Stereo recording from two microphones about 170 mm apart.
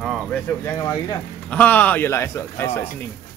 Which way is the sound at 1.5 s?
10° left (ahead or behind).